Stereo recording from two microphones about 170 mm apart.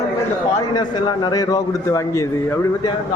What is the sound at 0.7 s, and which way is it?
A man's voice, 25° left (ahead or behind).